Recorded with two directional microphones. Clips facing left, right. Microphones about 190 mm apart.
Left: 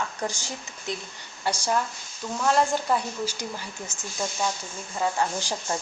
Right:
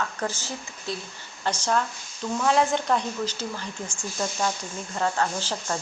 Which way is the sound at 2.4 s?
Centre (ahead or behind).